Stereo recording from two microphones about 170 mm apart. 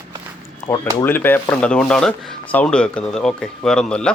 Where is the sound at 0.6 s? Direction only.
15° left (ahead or behind).